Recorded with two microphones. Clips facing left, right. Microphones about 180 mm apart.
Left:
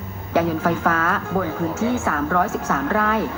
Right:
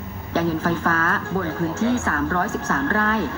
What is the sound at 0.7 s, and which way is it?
A woman's voice, 10° left (ahead or behind).